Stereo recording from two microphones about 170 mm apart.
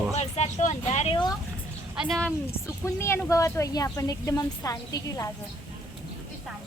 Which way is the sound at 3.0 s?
15° left (ahead or behind).